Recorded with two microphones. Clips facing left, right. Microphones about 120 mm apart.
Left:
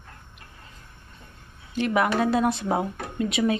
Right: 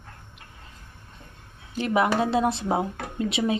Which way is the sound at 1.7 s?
30° right (ahead or behind).